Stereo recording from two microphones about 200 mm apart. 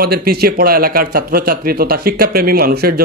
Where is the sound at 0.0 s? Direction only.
50° right (ahead or behind).